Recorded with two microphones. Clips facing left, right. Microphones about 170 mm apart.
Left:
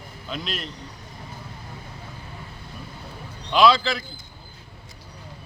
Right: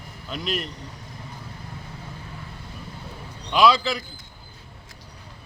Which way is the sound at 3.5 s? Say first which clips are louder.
Left 1 dB; 10° right (ahead or behind).